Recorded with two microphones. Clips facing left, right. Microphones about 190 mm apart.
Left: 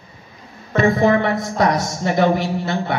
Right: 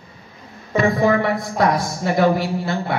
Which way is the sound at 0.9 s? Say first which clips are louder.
Left 1 dB; 25° left (ahead or behind).